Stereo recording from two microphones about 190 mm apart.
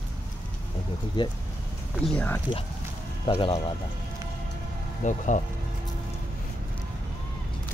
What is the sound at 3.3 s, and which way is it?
Speech, 30° left (ahead or behind).